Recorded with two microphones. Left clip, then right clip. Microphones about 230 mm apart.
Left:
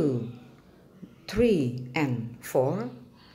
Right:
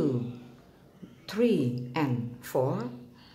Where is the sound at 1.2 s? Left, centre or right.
Centre.